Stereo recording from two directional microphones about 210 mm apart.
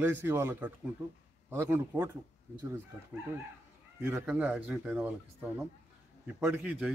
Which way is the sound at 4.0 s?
10° right (ahead or behind).